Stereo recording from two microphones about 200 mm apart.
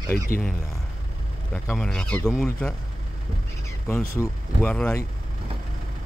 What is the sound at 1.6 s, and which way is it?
Speech, 5° left (ahead or behind).